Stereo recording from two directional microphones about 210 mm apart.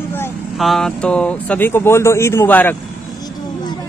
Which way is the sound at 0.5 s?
Centre (ahead or behind).